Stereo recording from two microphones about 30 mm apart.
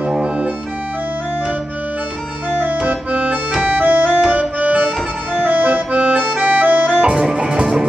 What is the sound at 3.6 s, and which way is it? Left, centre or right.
Music, right.